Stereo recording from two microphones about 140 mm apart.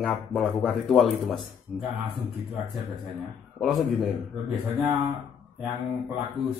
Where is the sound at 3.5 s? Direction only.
Centre (ahead or behind).